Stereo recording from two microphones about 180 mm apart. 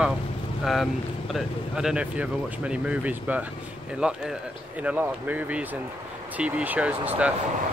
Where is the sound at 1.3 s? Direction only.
5° right (ahead or behind).